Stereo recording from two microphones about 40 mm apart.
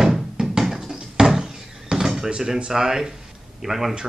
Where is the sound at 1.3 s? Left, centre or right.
Centre.